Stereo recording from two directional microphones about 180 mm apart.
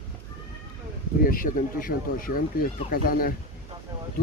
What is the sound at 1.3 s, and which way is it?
Speech, 50° left (ahead or behind).